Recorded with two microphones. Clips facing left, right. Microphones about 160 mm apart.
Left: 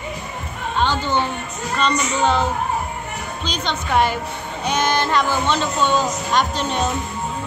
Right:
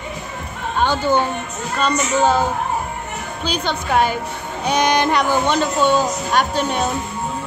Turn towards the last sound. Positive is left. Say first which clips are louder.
# right 2 dB
turn(degrees=-10)  # may be behind; listen again after turning